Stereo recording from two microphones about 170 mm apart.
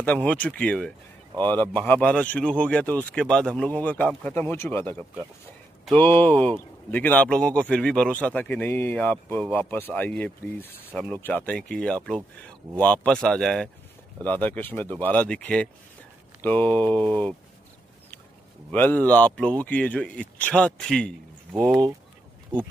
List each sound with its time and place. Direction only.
0.0 s speech: 10° left (ahead or behind)
18.7 s speech: 10° left (ahead or behind)